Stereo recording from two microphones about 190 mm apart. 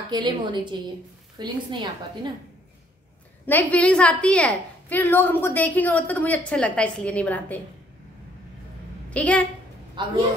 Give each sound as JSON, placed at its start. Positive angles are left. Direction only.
{"t": 0.1, "sound": "a woman's voice", "side_deg": -25}
{"t": 3.4, "sound": "a woman's voice", "side_deg": 10}
{"t": 9.1, "sound": "a woman's voice", "side_deg": 5}
{"t": 10.0, "sound": "a woman's voice", "side_deg": -25}